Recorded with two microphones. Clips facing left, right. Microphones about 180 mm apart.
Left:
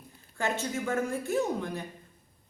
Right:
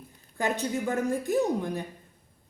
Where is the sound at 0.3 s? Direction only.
15° right (ahead or behind).